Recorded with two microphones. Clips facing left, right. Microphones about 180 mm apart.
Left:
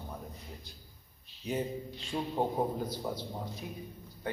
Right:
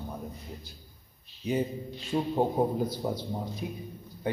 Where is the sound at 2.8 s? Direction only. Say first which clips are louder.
Right 5 dB; 10° right (ahead or behind).